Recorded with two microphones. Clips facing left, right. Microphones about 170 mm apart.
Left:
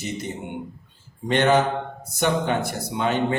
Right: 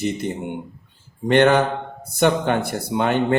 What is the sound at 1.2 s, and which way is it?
A man's voice, 55° right (ahead or behind).